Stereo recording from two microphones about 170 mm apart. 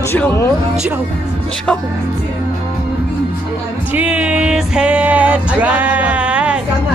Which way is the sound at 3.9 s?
10° right (ahead or behind).